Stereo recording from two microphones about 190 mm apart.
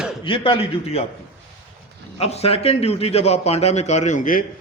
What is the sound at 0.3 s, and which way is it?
Speech, 25° left (ahead or behind).